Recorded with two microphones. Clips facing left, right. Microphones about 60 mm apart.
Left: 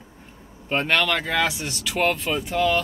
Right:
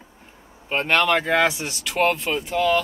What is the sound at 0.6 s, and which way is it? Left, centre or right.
Speech, centre.